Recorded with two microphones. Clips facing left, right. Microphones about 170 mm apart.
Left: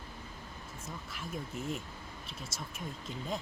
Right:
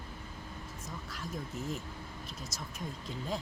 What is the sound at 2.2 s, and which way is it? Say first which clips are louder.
Speech: right 1 dB; 30° left (ahead or behind).